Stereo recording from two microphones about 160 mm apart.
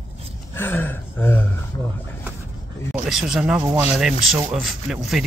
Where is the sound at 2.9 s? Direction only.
Centre (ahead or behind).